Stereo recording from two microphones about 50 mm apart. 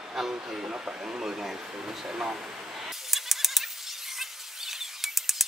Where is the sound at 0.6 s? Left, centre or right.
Right; by 1.5 s centre.